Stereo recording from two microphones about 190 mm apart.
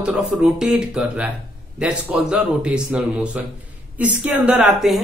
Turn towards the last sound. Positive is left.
turn(degrees=0)  # may be behind; listen again after turning